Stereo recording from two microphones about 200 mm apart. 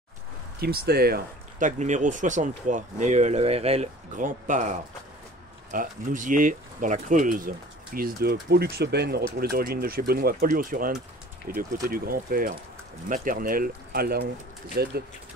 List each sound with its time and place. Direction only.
0.6 s speech: 50° right (ahead or behind)